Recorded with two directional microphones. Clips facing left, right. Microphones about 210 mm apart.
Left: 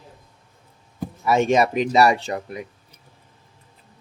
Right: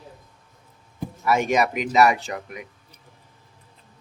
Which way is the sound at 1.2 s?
25° left (ahead or behind).